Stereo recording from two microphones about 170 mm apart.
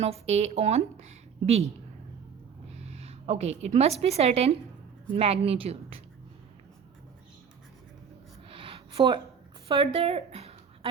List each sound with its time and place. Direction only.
0.0 s a woman's voice: 40° right (ahead or behind)
2.7 s a woman's voice: 40° right (ahead or behind)
8.4 s a sound: 30° right (ahead or behind)
9.6 s speech: 35° right (ahead or behind)